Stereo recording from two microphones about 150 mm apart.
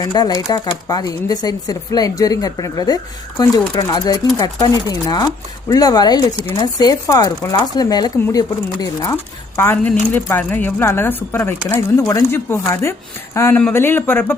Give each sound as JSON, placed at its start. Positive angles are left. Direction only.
{"t": 0.0, "sound": "speech", "side_deg": 25}
{"t": 9.6, "sound": "speech", "side_deg": 10}